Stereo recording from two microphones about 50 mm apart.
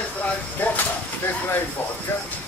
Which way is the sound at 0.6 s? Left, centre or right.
Left.